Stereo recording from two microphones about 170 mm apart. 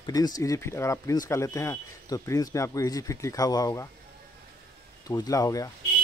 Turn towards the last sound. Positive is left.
turn(degrees=20)  # may be behind; listen again after turning